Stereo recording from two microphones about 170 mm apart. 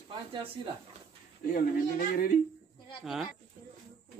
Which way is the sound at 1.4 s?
50° left (ahead or behind).